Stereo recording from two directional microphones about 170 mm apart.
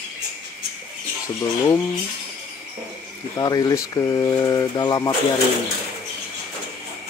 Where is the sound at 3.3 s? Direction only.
20° left (ahead or behind).